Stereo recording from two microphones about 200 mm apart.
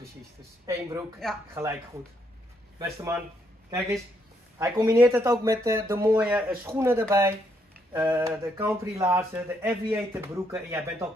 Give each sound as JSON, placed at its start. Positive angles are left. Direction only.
{"t": 0.7, "sound": "speech", "side_deg": -15}
{"t": 2.8, "sound": "speech", "side_deg": -15}
{"t": 4.6, "sound": "speech", "side_deg": -15}